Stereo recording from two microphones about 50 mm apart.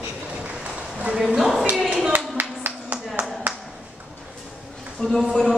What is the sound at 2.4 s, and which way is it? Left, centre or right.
Clapping, right.